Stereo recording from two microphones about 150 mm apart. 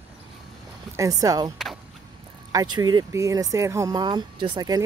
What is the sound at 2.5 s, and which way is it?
Speech, 25° right (ahead or behind).